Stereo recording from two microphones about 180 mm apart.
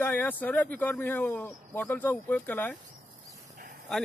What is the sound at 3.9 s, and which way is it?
Speech, centre (ahead or behind).